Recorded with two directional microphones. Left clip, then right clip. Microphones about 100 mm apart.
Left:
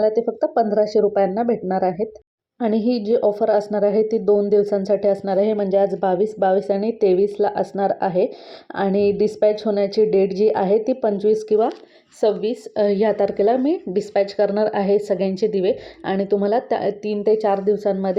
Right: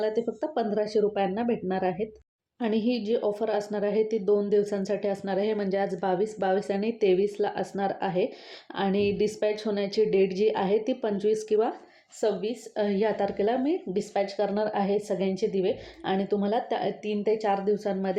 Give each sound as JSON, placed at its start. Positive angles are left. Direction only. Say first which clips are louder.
{"t": 0.0, "sound": "a woman's voice", "louder": "left 9 dB", "side_deg": 25}
{"t": 12.2, "sound": "a woman's voice", "louder": "left 8 dB", "side_deg": 90}